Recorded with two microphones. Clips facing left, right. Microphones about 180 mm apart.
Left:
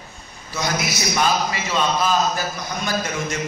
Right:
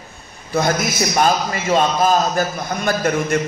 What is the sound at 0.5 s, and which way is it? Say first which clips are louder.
A man's voice: right 6 dB; 50° right (ahead or behind).